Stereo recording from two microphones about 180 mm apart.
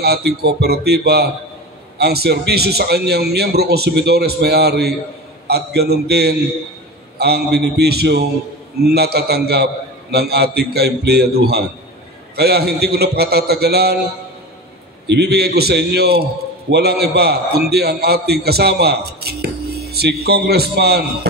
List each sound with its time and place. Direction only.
0.0 s a man's voice: 60° right (ahead or behind)
15.0 s a man's voice: 65° right (ahead or behind)